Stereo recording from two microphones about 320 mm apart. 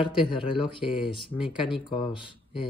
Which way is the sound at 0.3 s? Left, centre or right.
Centre.